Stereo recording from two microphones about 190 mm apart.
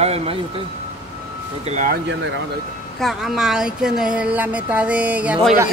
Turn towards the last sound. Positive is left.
turn(degrees=-5)  # may be behind; listen again after turning